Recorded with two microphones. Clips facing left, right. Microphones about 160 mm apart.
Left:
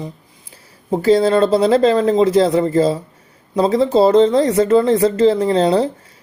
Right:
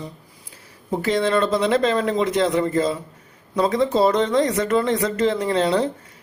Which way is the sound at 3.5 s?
30° left (ahead or behind).